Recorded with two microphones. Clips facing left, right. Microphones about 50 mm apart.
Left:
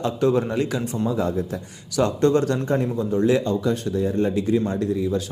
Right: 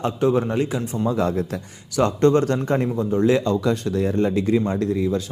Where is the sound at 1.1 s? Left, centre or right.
Right.